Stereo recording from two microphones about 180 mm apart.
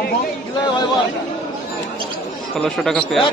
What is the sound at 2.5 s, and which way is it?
Speech, 5° left (ahead or behind).